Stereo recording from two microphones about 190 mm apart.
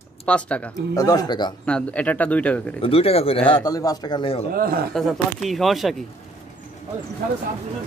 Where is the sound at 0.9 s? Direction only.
20° left (ahead or behind).